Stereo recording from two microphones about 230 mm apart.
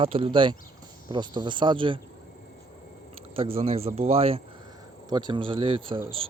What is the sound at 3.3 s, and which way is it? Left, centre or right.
Speech, right.